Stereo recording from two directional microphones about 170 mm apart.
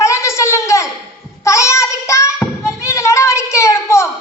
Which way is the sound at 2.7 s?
15° left (ahead or behind).